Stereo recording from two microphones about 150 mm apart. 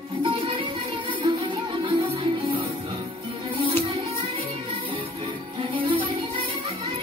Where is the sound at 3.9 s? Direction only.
40° right (ahead or behind).